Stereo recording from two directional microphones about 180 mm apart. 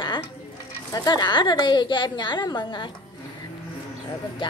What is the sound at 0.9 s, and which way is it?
Speech, 25° left (ahead or behind).